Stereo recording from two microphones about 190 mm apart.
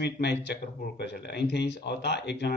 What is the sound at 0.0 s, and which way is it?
A man's voice, 65° left (ahead or behind).